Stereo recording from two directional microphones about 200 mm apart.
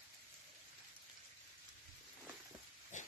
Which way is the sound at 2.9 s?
40° left (ahead or behind).